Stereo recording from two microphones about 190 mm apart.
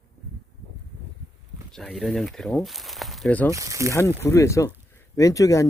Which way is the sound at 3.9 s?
15° left (ahead or behind).